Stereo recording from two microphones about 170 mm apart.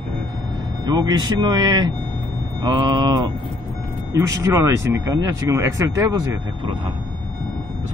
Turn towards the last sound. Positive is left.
turn(degrees=-20)  # may be behind; listen again after turning